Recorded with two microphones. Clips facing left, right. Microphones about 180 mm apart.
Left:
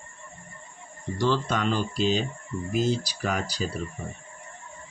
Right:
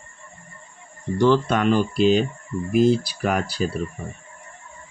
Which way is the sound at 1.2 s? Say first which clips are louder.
Right 7 dB; 60° right (ahead or behind).